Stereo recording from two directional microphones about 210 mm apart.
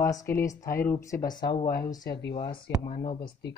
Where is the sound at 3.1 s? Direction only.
50° left (ahead or behind).